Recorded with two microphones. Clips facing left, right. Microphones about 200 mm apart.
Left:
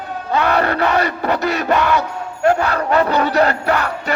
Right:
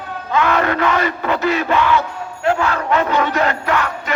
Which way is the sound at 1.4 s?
40° left (ahead or behind).